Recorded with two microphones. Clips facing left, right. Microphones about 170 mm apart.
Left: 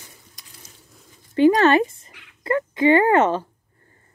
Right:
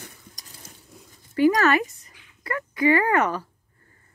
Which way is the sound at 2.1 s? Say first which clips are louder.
Left 5 dB; 80° left.